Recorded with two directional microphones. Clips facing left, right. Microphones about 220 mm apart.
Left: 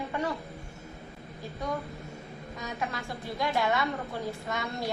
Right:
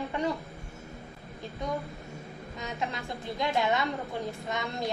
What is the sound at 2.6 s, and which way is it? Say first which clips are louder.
A woman's voice: even; 20° right (ahead or behind).